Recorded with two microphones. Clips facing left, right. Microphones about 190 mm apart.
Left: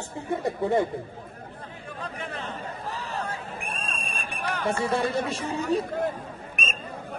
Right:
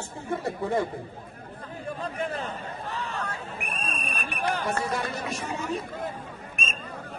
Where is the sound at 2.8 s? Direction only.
35° left (ahead or behind).